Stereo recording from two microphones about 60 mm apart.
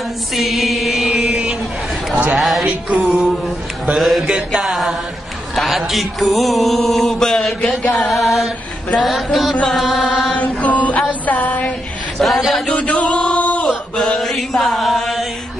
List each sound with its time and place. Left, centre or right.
0.4 s chant: centre
2.3 s music: centre
3.9 s mantra: centre
5.6 s music: centre
7.9 s mantra: centre
8.9 s music: centre
9.7 s mantra: centre
10.3 s mantra: left
11.2 s a sound: left
12.2 s a sound: centre
12.7 s male singing: left
13.9 s mantra: centre
14.2 s chant: centre